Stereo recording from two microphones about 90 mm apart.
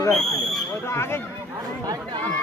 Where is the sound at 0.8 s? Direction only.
30° left (ahead or behind).